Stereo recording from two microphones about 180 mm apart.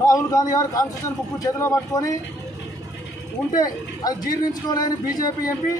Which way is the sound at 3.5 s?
20° left (ahead or behind).